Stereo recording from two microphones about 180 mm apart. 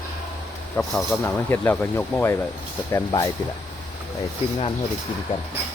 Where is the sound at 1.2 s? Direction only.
15° left (ahead or behind).